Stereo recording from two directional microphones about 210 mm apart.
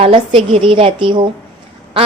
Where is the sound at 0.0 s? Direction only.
25° right (ahead or behind).